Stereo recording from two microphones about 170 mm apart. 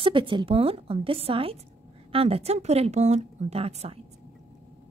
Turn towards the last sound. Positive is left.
turn(degrees=-35)  # may be behind; listen again after turning